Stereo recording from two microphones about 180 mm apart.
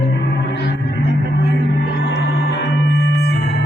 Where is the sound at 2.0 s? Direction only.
75° left (ahead or behind).